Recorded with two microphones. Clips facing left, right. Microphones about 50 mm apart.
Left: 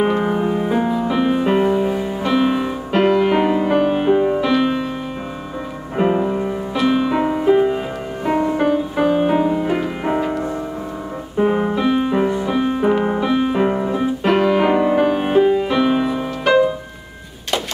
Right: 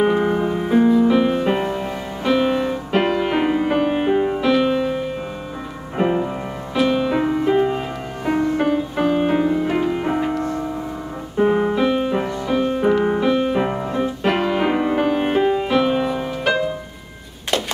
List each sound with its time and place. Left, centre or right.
0.0 s music: centre
5.9 s music: centre
8.3 s music: centre
11.3 s piano: centre
12.3 s music: centre
12.5 s music: centre
13.0 s piano: centre